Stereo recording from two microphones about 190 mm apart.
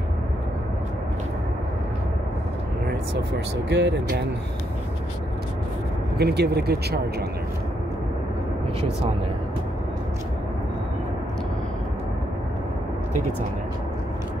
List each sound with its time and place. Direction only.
3.6 s speech: 65° right (ahead or behind)
6.1 s speech: 60° right (ahead or behind)